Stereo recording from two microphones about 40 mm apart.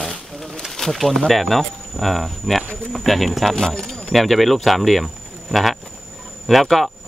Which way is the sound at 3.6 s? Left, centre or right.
Centre.